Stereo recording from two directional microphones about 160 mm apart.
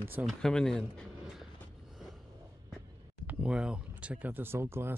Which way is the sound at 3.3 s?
5° right (ahead or behind).